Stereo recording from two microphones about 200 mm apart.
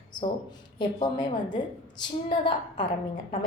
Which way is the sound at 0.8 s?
25° left (ahead or behind).